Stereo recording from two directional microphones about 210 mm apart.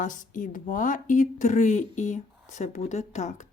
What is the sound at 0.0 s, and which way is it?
Speech, 40° left (ahead or behind).